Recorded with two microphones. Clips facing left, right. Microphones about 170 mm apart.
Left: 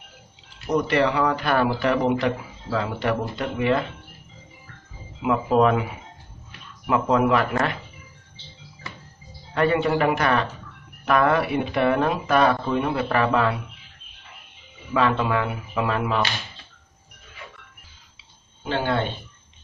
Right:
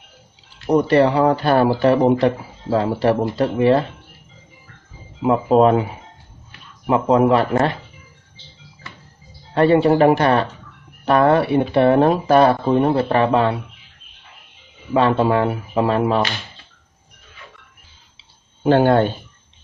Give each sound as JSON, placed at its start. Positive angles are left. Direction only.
{"t": 0.7, "sound": "speech", "side_deg": -35}
{"t": 5.2, "sound": "speech", "side_deg": -35}
{"t": 9.5, "sound": "speech", "side_deg": -30}
{"t": 15.0, "sound": "speech", "side_deg": -35}
{"t": 18.6, "sound": "speech", "side_deg": -50}